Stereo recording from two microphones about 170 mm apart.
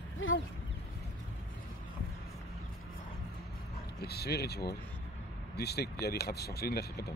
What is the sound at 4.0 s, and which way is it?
Speech, 70° left (ahead or behind).